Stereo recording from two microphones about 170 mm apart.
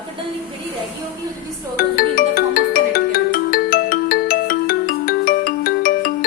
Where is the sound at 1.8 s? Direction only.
60° left (ahead or behind).